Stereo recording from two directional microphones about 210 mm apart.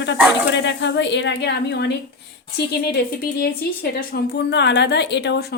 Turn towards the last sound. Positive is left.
turn(degrees=50)  # may be behind; listen again after turning